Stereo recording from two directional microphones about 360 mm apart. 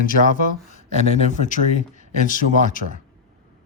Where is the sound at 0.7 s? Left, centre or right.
Centre.